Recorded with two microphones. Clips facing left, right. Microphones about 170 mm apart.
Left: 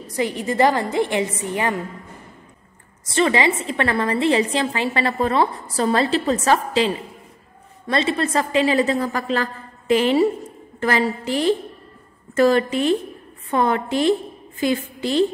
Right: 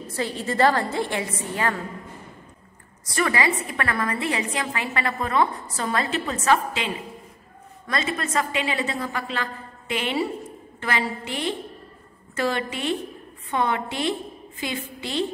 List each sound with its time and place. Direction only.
0.0 s a woman's voice: 15° left (ahead or behind)
3.1 s a woman's voice: 25° left (ahead or behind); by 14.1 s 40° left (ahead or behind)